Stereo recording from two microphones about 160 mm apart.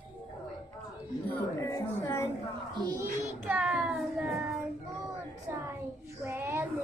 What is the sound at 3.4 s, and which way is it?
Child singing, 10° right (ahead or behind).